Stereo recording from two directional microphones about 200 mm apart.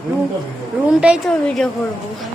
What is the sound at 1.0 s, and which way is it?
Speech, 5° right (ahead or behind).